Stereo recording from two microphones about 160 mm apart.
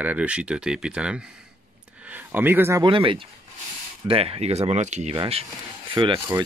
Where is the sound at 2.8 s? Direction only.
30° right (ahead or behind).